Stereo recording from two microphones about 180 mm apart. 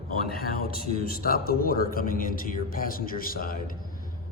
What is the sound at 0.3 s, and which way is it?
A man's voice, 55° left (ahead or behind).